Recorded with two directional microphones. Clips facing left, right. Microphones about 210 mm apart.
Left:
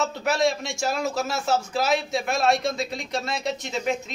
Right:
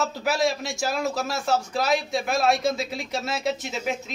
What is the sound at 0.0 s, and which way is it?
A man's voice, centre (ahead or behind).